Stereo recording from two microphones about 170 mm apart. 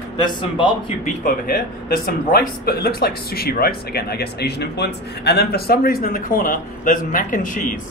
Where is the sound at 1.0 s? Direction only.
60° left (ahead or behind).